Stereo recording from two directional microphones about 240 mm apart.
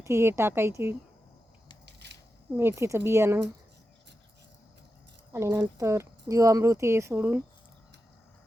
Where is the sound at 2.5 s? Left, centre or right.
Centre.